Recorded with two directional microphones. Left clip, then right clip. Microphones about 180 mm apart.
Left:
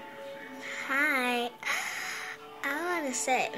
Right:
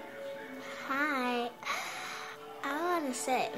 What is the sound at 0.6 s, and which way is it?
Music, 10° right (ahead or behind).